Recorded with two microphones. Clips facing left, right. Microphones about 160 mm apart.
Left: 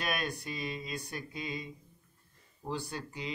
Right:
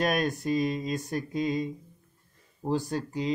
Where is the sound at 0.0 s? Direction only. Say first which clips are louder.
Right 9 dB; 45° right (ahead or behind).